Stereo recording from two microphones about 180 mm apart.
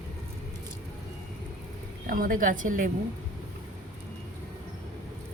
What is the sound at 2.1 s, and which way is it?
Speech, 50° right (ahead or behind).